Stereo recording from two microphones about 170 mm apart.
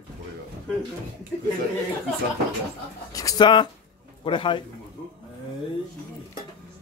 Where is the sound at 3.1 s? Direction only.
20° left (ahead or behind).